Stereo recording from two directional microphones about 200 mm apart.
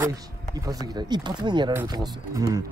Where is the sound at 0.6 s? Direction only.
20° right (ahead or behind).